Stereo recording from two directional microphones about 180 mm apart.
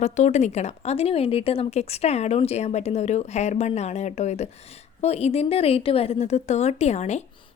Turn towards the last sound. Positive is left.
turn(degrees=40)  # may be behind; listen again after turning